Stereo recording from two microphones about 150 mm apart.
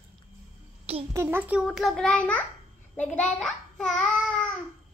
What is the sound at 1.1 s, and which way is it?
Speech, 15° right (ahead or behind).